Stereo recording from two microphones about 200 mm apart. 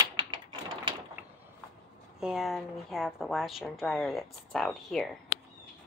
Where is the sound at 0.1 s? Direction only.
20° right (ahead or behind).